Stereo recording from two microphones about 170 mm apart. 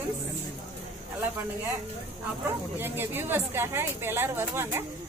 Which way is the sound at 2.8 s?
15° right (ahead or behind).